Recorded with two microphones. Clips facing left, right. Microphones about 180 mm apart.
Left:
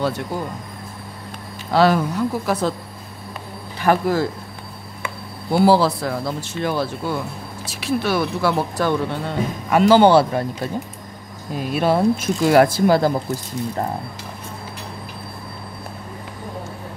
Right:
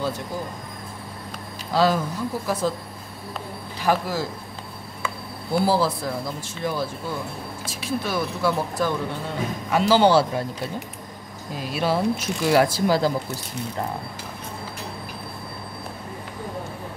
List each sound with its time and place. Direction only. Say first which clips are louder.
1.7 s speech: left 4 dB; 65° left (ahead or behind)
3.8 s speech: left 5 dB; 60° left (ahead or behind)
5.5 s speech: left 6 dB; 75° left (ahead or behind)
9.7 s speech: left 5 dB; 55° left (ahead or behind)
11.7 s speech: left 5 dB; 55° left (ahead or behind)